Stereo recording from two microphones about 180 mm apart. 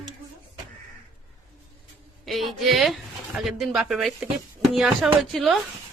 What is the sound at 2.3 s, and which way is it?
Speech, centre (ahead or behind).